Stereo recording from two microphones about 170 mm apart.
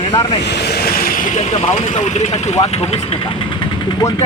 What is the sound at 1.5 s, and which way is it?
Speech, 40° left (ahead or behind).